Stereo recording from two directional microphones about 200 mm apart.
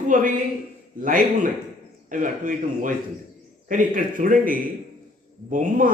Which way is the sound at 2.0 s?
40° right (ahead or behind).